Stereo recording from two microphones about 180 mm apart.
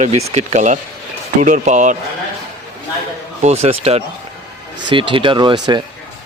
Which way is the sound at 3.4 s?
35° right (ahead or behind).